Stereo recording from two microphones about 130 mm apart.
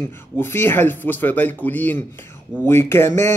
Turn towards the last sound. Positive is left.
turn(degrees=20)  # may be behind; listen again after turning